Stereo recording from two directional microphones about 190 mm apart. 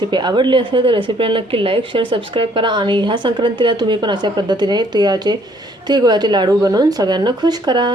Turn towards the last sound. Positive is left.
turn(degrees=-25)  # may be behind; listen again after turning